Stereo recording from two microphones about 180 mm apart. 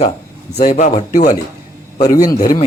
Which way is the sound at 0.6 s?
45° left (ahead or behind).